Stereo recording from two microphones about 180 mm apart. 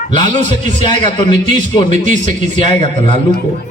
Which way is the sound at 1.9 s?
45° right (ahead or behind).